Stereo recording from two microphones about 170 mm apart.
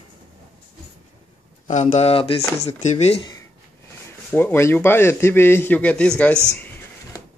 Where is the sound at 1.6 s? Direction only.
45° left (ahead or behind).